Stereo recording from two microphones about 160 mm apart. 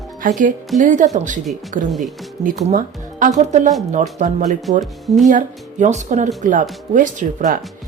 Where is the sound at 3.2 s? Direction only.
50° right (ahead or behind).